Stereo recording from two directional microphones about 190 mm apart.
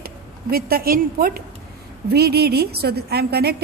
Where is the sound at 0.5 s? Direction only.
50° right (ahead or behind).